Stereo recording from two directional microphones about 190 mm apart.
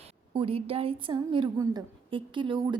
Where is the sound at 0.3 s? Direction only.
30° right (ahead or behind).